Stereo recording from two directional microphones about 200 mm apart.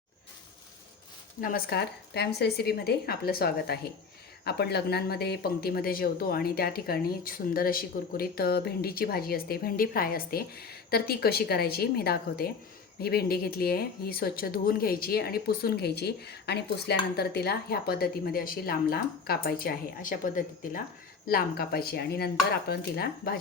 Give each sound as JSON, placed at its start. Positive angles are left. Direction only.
{"t": 1.4, "sound": "speech", "side_deg": 45}